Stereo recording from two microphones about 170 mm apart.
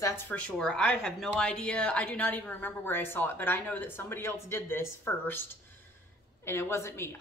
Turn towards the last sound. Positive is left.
turn(degrees=15)  # may be behind; listen again after turning